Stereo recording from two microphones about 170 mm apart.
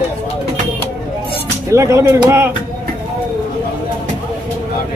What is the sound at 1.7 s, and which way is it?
Speech, 15° right (ahead or behind).